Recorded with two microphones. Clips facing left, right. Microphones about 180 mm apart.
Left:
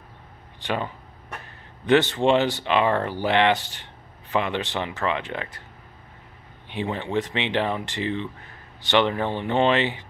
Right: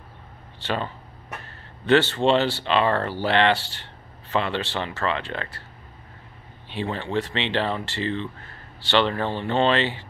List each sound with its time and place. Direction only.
0.6 s speech: 15° left (ahead or behind)
6.7 s speech: 15° left (ahead or behind)